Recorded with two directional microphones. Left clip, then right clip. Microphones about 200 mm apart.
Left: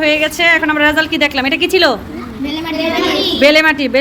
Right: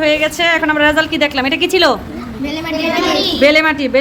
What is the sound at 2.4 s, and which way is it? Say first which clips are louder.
Speech: left 1 dB; 30° right (ahead or behind).